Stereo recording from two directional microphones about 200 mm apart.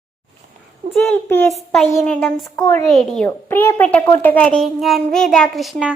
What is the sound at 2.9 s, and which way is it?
A child's voice, centre (ahead or behind).